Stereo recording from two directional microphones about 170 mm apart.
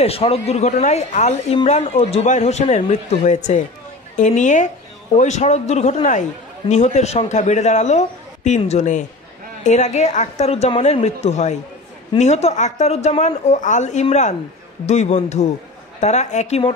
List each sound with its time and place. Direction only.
0.0 s a woman's voice: 35° left (ahead or behind)